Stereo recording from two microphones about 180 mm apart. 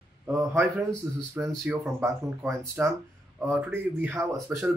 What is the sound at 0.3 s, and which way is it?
Speech, 15° right (ahead or behind).